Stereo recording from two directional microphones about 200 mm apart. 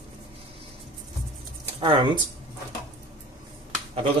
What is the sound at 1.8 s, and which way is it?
Speech, 25° right (ahead or behind).